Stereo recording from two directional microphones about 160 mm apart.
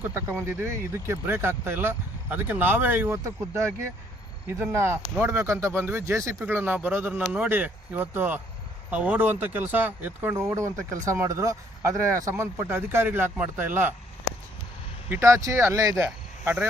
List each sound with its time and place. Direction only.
0.0 s speech: 15° right (ahead or behind)
15.1 s speech: 15° right (ahead or behind)
16.4 s speech: 10° right (ahead or behind)